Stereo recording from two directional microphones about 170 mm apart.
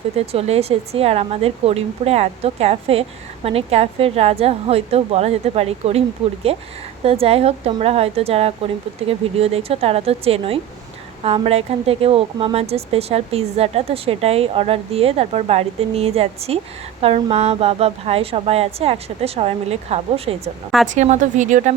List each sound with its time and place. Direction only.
0.3 s speech: 35° right (ahead or behind)